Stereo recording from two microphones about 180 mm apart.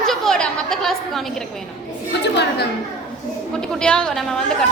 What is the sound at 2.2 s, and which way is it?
Speech, 70° left (ahead or behind).